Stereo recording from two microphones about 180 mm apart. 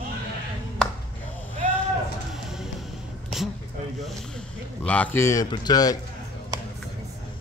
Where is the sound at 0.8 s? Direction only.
5° left (ahead or behind).